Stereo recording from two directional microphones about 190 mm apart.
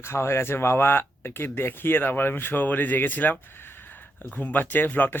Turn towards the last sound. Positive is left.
turn(degrees=10)  # may be behind; listen again after turning